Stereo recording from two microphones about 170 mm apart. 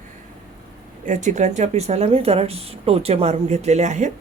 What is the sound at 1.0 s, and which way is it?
A woman's voice, 45° right (ahead or behind).